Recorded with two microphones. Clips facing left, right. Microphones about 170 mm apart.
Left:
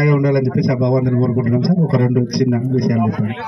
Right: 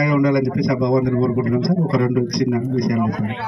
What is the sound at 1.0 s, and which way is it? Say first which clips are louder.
Speech: left 1 dB; 25° left (ahead or behind).